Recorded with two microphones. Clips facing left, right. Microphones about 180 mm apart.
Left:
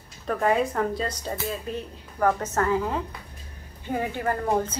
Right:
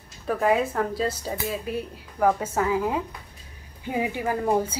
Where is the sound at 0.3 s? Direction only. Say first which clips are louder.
Right 1 dB; 5° right (ahead or behind).